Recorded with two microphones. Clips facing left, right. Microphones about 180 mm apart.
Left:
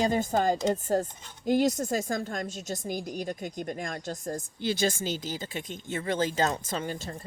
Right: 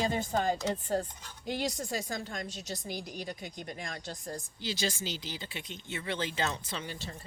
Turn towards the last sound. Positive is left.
turn(degrees=45)  # may be behind; listen again after turning